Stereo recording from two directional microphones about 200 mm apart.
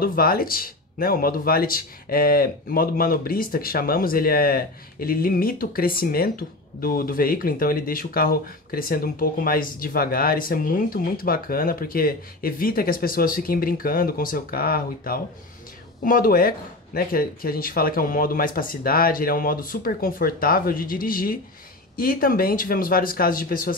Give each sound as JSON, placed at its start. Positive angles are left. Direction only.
{"t": 0.0, "sound": "speech", "side_deg": 45}